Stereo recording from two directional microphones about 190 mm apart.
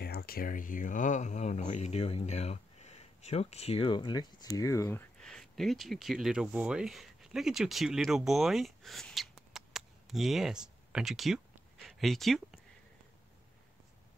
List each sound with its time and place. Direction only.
0.0 s speech: 55° left (ahead or behind); by 5.0 s 15° left (ahead or behind)
5.2 s speech: centre (ahead or behind)